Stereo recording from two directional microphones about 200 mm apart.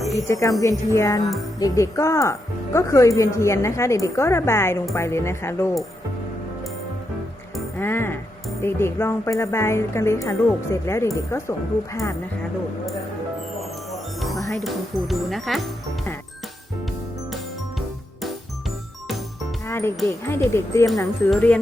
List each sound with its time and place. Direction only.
0.1 s a woman's voice: 15° left (ahead or behind)
7.8 s a woman's voice: 10° left (ahead or behind)
13.9 s music: centre (ahead or behind)
14.6 s speech: centre (ahead or behind)
19.6 s music: 10° left (ahead or behind)
20.1 s a woman's voice: 10° left (ahead or behind)